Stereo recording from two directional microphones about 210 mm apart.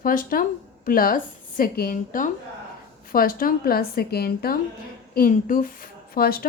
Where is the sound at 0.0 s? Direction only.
40° left (ahead or behind).